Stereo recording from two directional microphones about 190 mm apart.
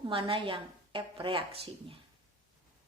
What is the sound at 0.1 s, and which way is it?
Speech, 30° right (ahead or behind).